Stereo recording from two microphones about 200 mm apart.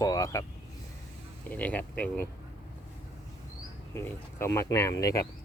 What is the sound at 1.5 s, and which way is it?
Speech, 10° left (ahead or behind).